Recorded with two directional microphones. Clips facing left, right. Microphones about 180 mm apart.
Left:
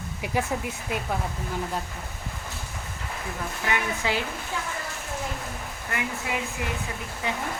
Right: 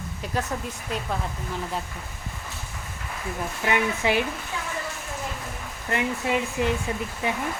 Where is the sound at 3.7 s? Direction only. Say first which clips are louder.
Right 4 dB; 20° right (ahead or behind).